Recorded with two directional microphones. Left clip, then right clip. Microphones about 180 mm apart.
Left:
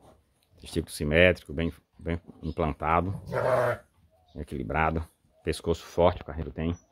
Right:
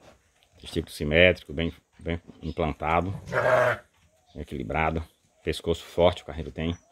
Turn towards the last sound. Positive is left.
turn(degrees=-5)  # may be behind; listen again after turning